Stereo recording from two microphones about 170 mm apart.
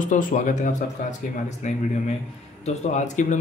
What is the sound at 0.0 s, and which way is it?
Speech, 50° left (ahead or behind).